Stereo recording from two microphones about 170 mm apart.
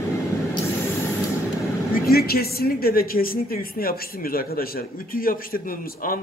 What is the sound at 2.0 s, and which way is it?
A woman's voice, 65° left (ahead or behind).